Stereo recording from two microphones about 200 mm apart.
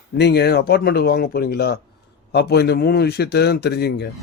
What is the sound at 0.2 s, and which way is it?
A man's voice, 55° left (ahead or behind).